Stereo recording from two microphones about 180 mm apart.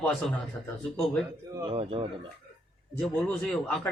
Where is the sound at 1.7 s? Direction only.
30° right (ahead or behind).